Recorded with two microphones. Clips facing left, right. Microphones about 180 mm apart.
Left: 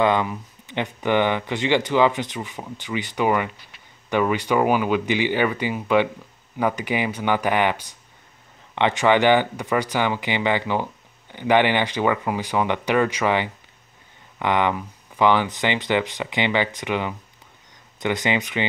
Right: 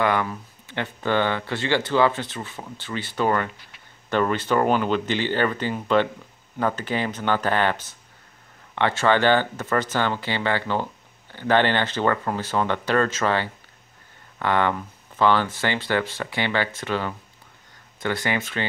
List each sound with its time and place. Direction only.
0.0 s speech: 20° left (ahead or behind)